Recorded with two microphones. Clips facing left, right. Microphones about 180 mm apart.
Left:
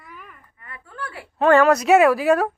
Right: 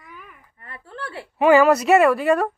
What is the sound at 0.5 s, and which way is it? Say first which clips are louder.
Speech: even; 30° right (ahead or behind).